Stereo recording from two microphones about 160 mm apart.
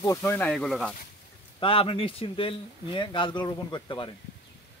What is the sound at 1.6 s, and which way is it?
Speech, 35° left (ahead or behind).